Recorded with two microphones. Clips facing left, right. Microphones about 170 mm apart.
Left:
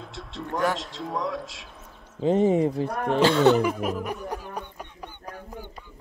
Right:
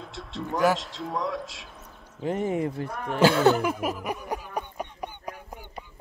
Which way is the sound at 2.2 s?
25° left (ahead or behind).